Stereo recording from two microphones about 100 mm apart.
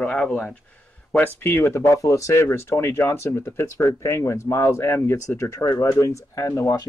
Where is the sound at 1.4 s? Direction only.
25° left (ahead or behind).